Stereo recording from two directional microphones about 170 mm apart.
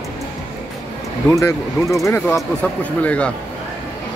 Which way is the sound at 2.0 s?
15° left (ahead or behind).